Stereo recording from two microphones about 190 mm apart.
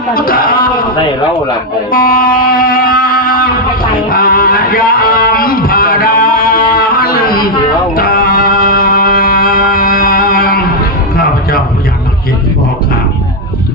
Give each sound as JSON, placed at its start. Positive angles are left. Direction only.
{"t": 0.1, "sound": "speech", "side_deg": 50}
{"t": 1.9, "sound": "music", "side_deg": 50}